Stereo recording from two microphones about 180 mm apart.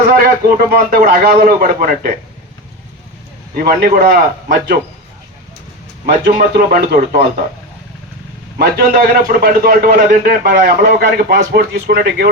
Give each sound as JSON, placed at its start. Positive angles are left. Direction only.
{"t": 0.2, "sound": "a man's voice", "side_deg": -55}
{"t": 3.6, "sound": "a man's voice", "side_deg": -55}
{"t": 6.2, "sound": "a man's voice", "side_deg": -55}
{"t": 8.5, "sound": "a man's voice", "side_deg": -55}